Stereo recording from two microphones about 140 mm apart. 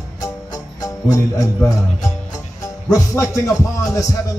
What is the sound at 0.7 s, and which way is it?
Speech, 25° left (ahead or behind).